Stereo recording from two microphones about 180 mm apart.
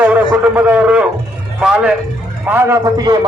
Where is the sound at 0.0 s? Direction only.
10° right (ahead or behind).